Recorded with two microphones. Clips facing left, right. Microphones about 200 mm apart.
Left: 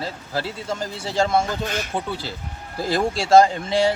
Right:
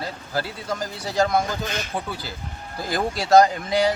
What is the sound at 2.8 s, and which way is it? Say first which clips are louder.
A man's voice: left 3 dB; 30° left (ahead or behind).